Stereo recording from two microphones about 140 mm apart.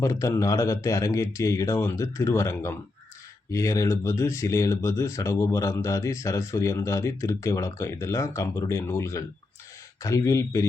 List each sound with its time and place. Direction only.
0.0 s speech: 20° left (ahead or behind)